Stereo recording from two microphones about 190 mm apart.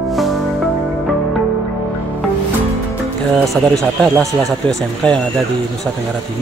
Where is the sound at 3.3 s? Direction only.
Centre (ahead or behind).